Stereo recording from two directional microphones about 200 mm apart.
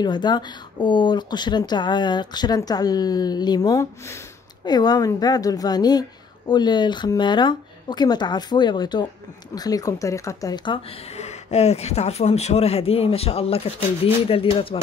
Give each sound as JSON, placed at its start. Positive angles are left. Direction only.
{"t": 0.0, "sound": "a woman's voice", "side_deg": 20}